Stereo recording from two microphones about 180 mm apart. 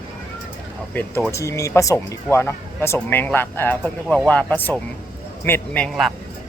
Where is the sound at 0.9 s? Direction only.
10° left (ahead or behind).